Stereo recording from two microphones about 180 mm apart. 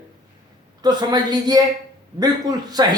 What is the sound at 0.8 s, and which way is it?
A man's voice, 20° right (ahead or behind).